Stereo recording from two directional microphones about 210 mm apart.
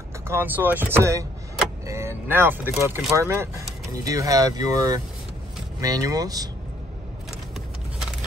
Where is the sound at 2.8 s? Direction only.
10° right (ahead or behind).